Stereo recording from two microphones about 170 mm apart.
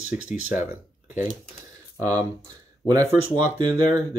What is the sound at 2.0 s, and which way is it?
Speech, 20° right (ahead or behind).